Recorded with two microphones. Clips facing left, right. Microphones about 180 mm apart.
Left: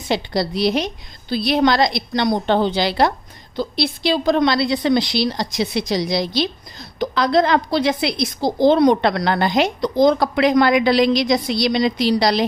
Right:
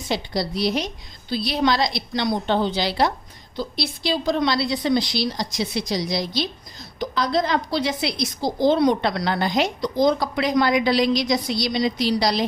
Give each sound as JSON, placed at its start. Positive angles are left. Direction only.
{"t": 0.1, "sound": "a woman's voice", "side_deg": 70}
{"t": 1.3, "sound": "a woman's voice", "side_deg": 55}
{"t": 9.0, "sound": "a woman's voice", "side_deg": 65}